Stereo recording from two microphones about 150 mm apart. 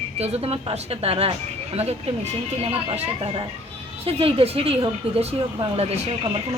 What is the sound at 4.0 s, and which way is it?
Speech, 40° right (ahead or behind).